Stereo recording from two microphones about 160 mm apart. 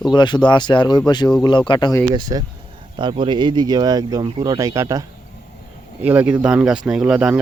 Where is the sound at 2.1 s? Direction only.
25° right (ahead or behind).